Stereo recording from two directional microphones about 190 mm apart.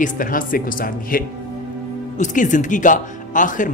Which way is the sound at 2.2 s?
40° left (ahead or behind).